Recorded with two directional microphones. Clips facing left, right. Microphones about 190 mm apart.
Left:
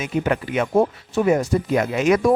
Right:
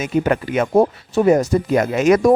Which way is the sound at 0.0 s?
45° right (ahead or behind).